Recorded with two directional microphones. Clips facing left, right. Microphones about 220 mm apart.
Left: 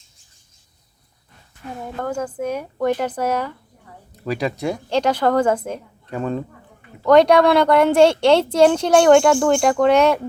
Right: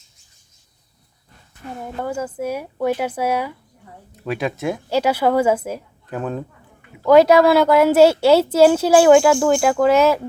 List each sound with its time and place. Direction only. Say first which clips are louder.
2.0 s speech: even; 5° right (ahead or behind)